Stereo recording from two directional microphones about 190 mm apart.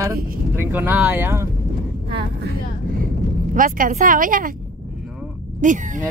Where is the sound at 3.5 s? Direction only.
45° right (ahead or behind).